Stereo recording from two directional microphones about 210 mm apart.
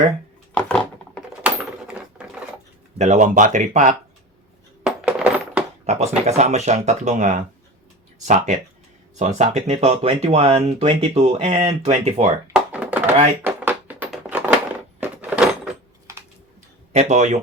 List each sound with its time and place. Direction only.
0.5 s a sound: 5° left (ahead or behind)
1.5 s coin: 5° right (ahead or behind)
3.0 s speech: 35° right (ahead or behind)
4.8 s coin: 5° right (ahead or behind)
5.8 s speech: 30° right (ahead or behind)
12.5 s thunk: 5° right (ahead or behind)
13.4 s a sound: 10° right (ahead or behind)
16.1 s typing: 15° right (ahead or behind)
16.9 s speech: 30° right (ahead or behind)